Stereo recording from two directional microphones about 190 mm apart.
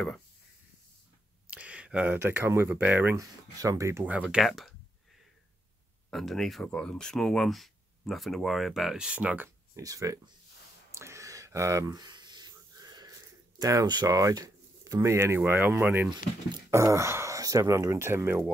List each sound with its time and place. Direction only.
1.5 s speech: 5° right (ahead or behind)
4.3 s speech: centre (ahead or behind)
6.0 s speech: centre (ahead or behind); by 10.3 s 15° right (ahead or behind)
10.9 s a sound: 15° right (ahead or behind)
13.6 s speech: 20° right (ahead or behind)